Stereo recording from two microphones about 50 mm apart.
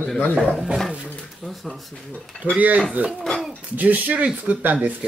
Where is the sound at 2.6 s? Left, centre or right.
Right.